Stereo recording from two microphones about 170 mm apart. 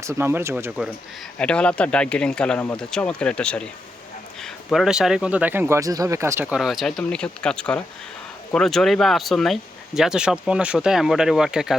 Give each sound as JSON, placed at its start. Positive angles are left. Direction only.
{"t": 0.0, "sound": "speech", "side_deg": -15}
{"t": 1.4, "sound": "speech", "side_deg": 5}